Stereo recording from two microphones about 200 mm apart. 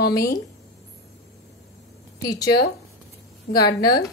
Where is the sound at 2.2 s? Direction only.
20° left (ahead or behind).